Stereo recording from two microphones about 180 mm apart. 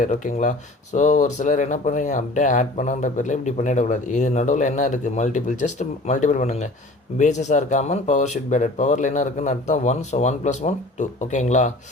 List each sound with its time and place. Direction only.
0.0 s speech: 45° left (ahead or behind)